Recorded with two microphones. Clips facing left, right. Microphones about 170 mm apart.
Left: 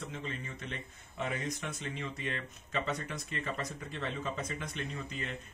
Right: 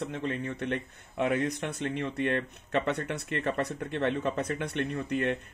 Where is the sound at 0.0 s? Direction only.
65° right (ahead or behind).